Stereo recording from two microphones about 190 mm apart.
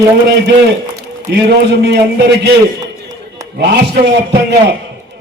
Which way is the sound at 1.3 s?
60° right (ahead or behind).